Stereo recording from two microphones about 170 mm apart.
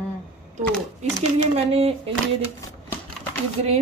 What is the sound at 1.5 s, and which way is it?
Speech, 35° right (ahead or behind).